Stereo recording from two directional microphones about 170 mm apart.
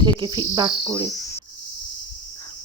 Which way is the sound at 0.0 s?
25° right (ahead or behind).